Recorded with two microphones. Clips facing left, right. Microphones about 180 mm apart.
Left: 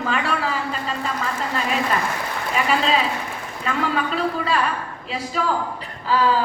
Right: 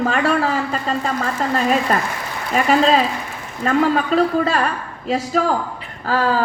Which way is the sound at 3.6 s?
45° right (ahead or behind).